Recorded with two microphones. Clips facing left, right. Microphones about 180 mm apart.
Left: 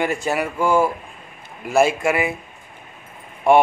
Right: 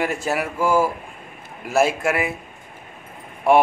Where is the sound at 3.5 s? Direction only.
5° right (ahead or behind).